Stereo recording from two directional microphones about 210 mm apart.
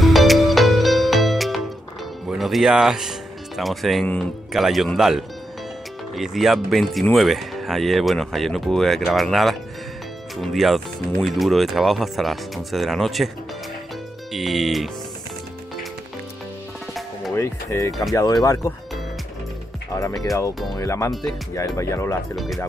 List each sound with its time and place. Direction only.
0.0 s music: centre (ahead or behind)
2.2 s speech: centre (ahead or behind)
14.3 s speech: centre (ahead or behind)
17.3 s speech: 15° left (ahead or behind)
19.9 s speech: 15° left (ahead or behind)
22.3 s speech: centre (ahead or behind)